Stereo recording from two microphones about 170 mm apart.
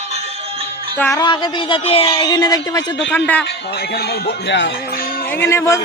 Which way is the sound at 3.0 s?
10° left (ahead or behind).